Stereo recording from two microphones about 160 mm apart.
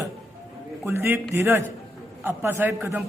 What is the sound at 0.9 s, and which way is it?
A woman's voice, 15° right (ahead or behind).